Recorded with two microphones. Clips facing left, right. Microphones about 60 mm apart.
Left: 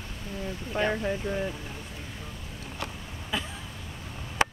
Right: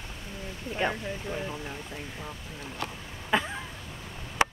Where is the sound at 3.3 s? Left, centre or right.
Right.